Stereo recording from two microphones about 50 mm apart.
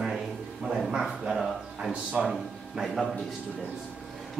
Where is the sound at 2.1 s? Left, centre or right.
Right.